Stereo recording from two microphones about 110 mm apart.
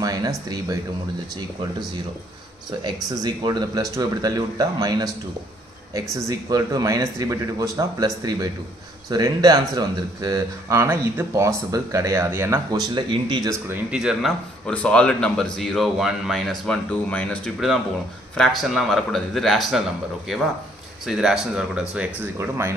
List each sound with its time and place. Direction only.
0.0 s speech: 35° right (ahead or behind)
2.8 s speech: 35° right (ahead or behind)
12.7 s speech: 40° right (ahead or behind)
13.8 s speech: 5° right (ahead or behind)
14.7 s a man's voice: 10° left (ahead or behind); by 22.3 s 10° right (ahead or behind)
22.4 s speech: 20° right (ahead or behind)